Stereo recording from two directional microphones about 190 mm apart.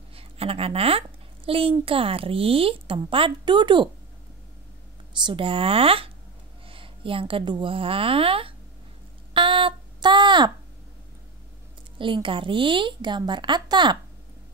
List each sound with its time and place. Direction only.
0.1 s a woman's voice: 30° right (ahead or behind)
5.1 s a woman's voice: 25° right (ahead or behind)
9.3 s a sound: 25° right (ahead or behind)
12.0 s a woman's voice: 25° right (ahead or behind)